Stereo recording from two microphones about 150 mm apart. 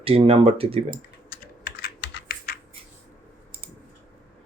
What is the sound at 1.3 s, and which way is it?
Typing, 90° left.